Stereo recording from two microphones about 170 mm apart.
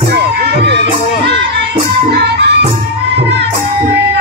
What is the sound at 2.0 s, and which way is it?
Music, 85° right.